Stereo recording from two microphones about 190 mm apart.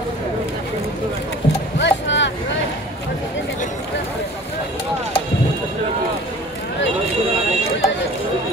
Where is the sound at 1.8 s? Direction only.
70° left (ahead or behind).